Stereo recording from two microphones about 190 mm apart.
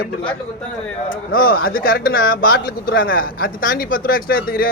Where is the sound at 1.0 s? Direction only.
50° left (ahead or behind).